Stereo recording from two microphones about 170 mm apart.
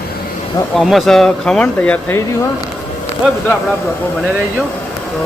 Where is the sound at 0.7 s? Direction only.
Centre (ahead or behind).